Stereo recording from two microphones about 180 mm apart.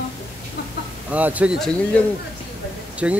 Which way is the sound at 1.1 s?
10° right (ahead or behind).